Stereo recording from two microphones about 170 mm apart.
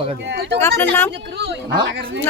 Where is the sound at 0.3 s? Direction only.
90° right.